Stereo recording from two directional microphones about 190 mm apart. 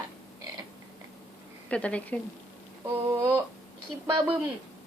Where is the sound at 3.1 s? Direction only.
15° right (ahead or behind).